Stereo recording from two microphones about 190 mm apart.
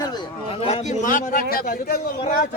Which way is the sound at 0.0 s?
20° left (ahead or behind).